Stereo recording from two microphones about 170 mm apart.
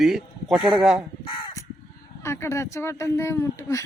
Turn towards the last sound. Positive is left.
turn(degrees=15)  # may be behind; listen again after turning